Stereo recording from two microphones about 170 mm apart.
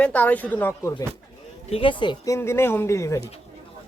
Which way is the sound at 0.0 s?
10° left (ahead or behind).